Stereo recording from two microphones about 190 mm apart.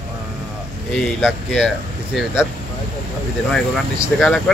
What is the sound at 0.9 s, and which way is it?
Speech, centre (ahead or behind).